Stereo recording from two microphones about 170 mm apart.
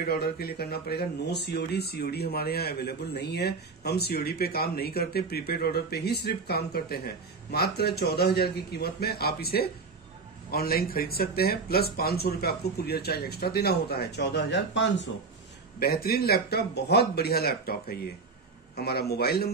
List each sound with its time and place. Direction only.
0.0 s speech: 65° left (ahead or behind); by 15.0 s 90° left
15.8 s speech: 65° left (ahead or behind)